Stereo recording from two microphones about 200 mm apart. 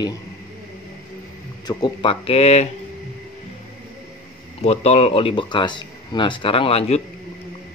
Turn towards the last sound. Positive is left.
turn(degrees=30)  # may be behind; listen again after turning